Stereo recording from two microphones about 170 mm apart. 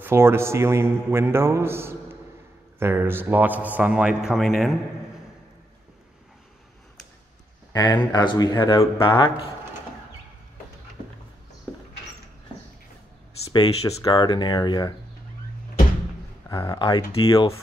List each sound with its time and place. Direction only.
0.0 s a man's voice: 15° right (ahead or behind)
7.7 s speech: 25° left (ahead or behind)
13.5 s speech: 25° left (ahead or behind)
16.4 s speech: 20° left (ahead or behind)